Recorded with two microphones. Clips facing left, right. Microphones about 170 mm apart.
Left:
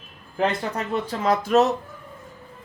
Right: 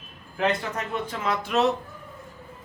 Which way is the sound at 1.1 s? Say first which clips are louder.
Left 7 dB; 40° left (ahead or behind).